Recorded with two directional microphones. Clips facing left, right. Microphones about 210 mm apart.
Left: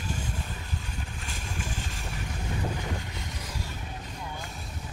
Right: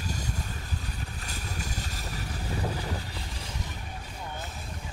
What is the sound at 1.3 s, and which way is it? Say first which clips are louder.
Vehicle: left 1 dB; 40° right (ahead or behind).